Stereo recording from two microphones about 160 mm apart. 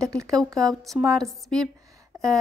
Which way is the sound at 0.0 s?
5° left (ahead or behind).